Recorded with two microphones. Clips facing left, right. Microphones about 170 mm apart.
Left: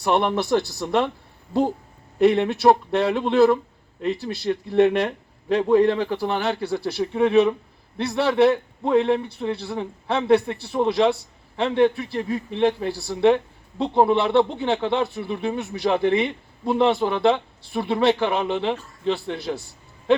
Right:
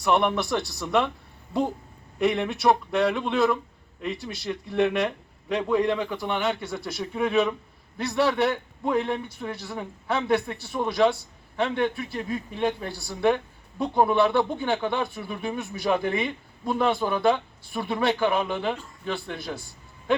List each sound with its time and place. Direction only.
0.0 s speech: 30° left (ahead or behind)
2.1 s a man's voice: 30° left (ahead or behind)